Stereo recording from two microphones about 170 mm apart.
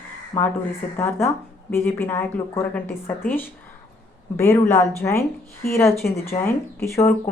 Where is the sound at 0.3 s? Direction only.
10° left (ahead or behind).